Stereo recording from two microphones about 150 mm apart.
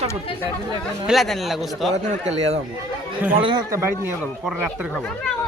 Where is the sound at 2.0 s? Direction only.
45° right (ahead or behind).